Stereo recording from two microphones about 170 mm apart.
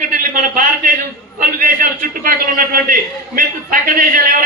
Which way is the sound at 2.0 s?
55° right (ahead or behind).